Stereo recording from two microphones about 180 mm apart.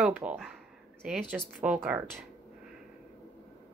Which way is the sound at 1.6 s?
10° right (ahead or behind).